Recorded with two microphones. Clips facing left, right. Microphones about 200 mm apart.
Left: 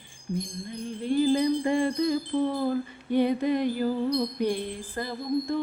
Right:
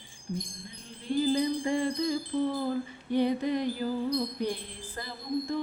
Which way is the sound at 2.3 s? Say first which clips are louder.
Left 3 dB; 50° left (ahead or behind).